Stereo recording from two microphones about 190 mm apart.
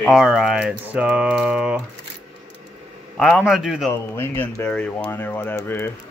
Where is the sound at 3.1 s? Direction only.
5° left (ahead or behind).